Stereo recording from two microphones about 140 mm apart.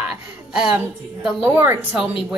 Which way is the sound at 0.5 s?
5° right (ahead or behind).